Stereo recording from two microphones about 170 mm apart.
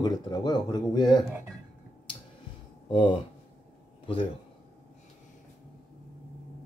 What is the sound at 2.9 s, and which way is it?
Speech, 30° left (ahead or behind).